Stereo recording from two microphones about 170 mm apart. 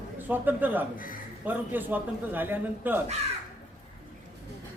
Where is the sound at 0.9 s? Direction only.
55° left (ahead or behind).